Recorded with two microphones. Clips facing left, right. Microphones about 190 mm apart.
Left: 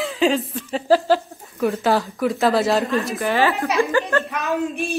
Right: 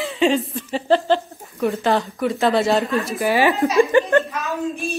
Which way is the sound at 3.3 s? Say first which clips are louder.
Right 3 dB; 15° right (ahead or behind).